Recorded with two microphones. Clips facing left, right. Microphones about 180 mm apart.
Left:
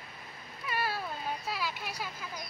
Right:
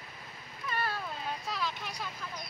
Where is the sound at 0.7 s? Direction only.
10° left (ahead or behind).